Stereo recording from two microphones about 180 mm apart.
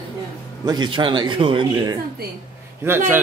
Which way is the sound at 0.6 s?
25° right (ahead or behind).